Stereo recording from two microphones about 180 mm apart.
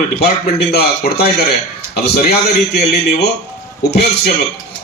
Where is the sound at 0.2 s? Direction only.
60° left (ahead or behind).